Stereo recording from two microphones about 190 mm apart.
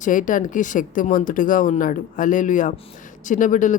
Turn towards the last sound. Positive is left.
turn(degrees=40)  # may be behind; listen again after turning